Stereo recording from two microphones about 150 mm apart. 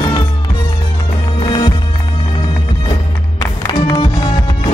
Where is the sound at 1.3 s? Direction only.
35° left (ahead or behind).